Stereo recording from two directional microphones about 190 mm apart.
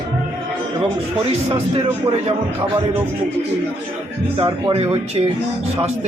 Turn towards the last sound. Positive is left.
turn(degrees=-30)  # may be behind; listen again after turning